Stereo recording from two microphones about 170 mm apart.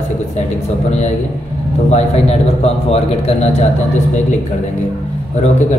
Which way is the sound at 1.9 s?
40° left (ahead or behind).